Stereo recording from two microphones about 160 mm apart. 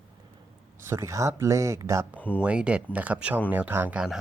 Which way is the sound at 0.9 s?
20° right (ahead or behind).